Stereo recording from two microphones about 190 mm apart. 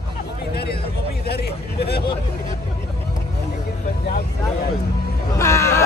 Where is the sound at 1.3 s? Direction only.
60° left (ahead or behind).